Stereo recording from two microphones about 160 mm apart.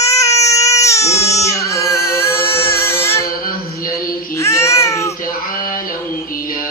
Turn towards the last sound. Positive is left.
turn(degrees=20)  # may be behind; listen again after turning